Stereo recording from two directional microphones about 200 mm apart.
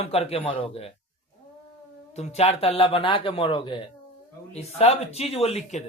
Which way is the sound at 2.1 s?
35° left (ahead or behind).